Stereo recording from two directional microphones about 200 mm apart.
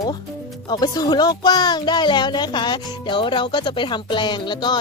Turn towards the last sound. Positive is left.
turn(degrees=20)  # may be behind; listen again after turning